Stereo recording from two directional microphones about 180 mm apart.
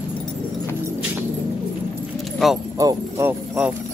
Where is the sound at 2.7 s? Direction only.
20° right (ahead or behind).